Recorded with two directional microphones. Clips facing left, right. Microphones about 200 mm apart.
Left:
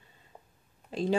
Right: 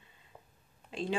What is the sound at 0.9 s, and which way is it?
Speech, 40° left (ahead or behind).